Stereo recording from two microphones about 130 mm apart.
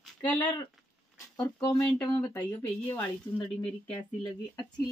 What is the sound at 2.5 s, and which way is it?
Speech, 30° left (ahead or behind).